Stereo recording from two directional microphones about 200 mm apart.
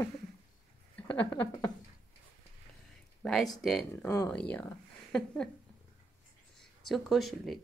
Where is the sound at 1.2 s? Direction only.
15° left (ahead or behind).